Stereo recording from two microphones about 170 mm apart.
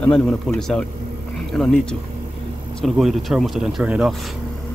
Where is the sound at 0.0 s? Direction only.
5° left (ahead or behind).